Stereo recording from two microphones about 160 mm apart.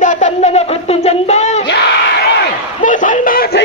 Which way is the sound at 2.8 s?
50° left (ahead or behind).